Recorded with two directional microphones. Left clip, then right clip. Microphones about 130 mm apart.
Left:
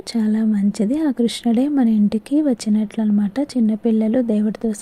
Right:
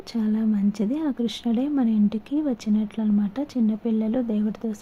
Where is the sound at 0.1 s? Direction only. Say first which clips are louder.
Left 5 dB; 30° left (ahead or behind).